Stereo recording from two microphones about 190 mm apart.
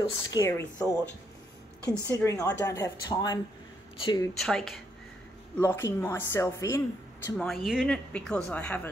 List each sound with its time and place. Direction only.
0.0 s a woman's voice: 20° left (ahead or behind)
4.4 s speech: centre (ahead or behind)
5.6 s a woman's voice: 10° left (ahead or behind)
7.3 s speech: centre (ahead or behind)